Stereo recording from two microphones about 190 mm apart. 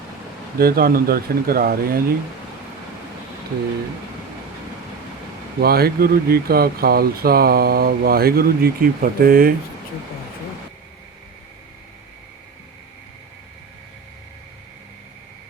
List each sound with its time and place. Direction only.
0.6 s speech: 50° right (ahead or behind)
5.5 s speech: 55° right (ahead or behind)